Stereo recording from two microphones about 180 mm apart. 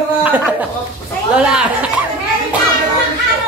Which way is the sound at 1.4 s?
5° right (ahead or behind).